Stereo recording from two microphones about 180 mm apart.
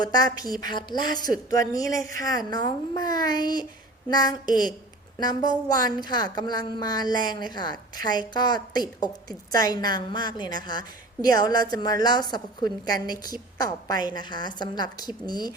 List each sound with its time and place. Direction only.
0.0 s a woman's voice: 20° left (ahead or behind)